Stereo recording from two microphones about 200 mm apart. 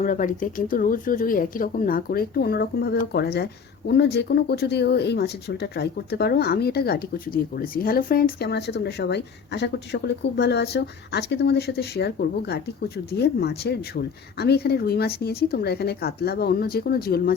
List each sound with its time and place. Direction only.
0.0 s speech: 40° left (ahead or behind)